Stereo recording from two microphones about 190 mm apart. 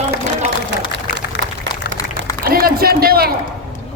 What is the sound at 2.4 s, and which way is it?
Speech, 50° right (ahead or behind).